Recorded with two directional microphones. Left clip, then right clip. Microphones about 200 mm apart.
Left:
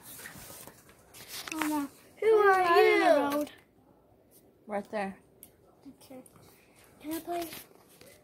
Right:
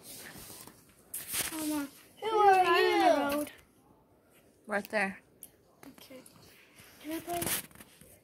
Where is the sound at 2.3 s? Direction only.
25° left (ahead or behind).